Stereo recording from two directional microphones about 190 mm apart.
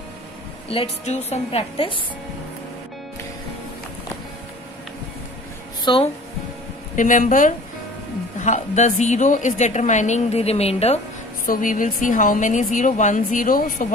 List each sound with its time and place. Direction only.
0.7 s a woman's voice: 35° left (ahead or behind)
5.9 s speech: 25° left (ahead or behind)
7.0 s a woman's voice: 40° left (ahead or behind)
11.4 s a woman's voice: 45° left (ahead or behind)